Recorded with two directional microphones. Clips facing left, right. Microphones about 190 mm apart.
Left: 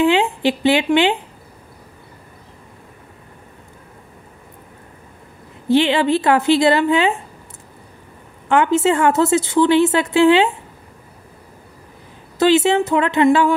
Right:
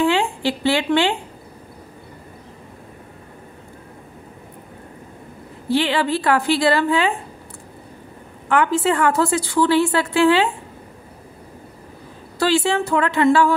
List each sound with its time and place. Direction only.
0.0 s a woman's voice: 20° left (ahead or behind)
5.7 s a woman's voice: 25° left (ahead or behind)
8.5 s a woman's voice: 25° left (ahead or behind)
12.4 s a woman's voice: 20° left (ahead or behind)